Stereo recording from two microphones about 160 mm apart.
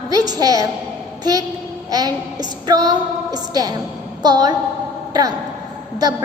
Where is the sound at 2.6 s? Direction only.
25° right (ahead or behind).